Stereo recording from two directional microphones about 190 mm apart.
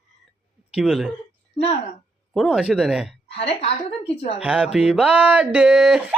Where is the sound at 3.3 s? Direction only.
30° left (ahead or behind).